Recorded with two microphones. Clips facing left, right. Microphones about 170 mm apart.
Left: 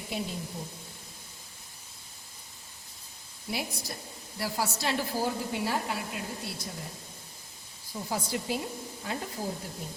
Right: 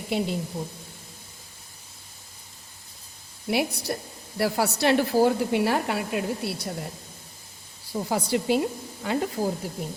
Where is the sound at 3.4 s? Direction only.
65° right (ahead or behind).